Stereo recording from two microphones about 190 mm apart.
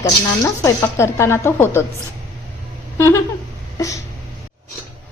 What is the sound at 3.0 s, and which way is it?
Speech, 15° left (ahead or behind).